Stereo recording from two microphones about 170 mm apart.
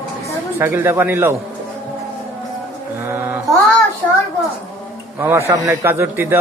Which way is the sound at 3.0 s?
15° right (ahead or behind).